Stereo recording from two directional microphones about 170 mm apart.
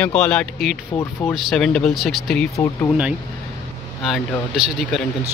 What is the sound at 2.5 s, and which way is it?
Speech, 20° left (ahead or behind).